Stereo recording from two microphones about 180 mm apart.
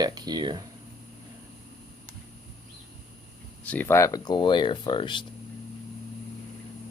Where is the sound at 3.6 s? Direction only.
10° left (ahead or behind); by 5.2 s 25° left (ahead or behind).